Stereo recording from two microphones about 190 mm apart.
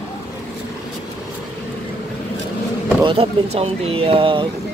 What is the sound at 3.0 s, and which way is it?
Speech, 25° right (ahead or behind).